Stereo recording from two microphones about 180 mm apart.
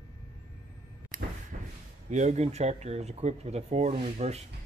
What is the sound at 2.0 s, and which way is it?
Speech, 40° right (ahead or behind).